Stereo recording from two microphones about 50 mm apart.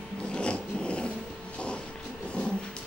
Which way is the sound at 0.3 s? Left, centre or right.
Left.